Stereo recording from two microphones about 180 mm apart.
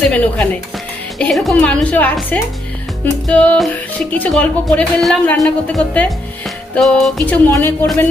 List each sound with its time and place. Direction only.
0.0 s speech: 5° left (ahead or behind)